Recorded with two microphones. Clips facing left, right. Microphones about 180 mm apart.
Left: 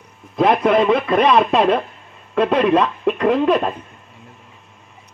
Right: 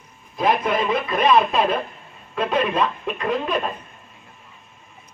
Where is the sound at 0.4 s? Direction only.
70° left (ahead or behind).